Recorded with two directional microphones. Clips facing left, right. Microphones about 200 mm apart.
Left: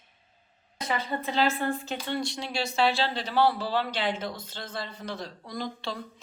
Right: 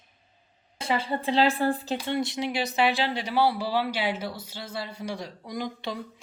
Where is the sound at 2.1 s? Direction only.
20° right (ahead or behind).